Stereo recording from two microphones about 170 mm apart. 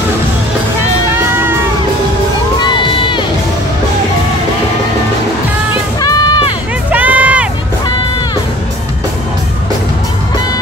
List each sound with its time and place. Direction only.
2.6 s crowd: 30° left (ahead or behind)
5.9 s music: 25° left (ahead or behind)
6.9 s a sound: 10° right (ahead or behind)